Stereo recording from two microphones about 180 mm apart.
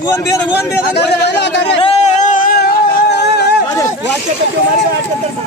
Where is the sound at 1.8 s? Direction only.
40° left (ahead or behind).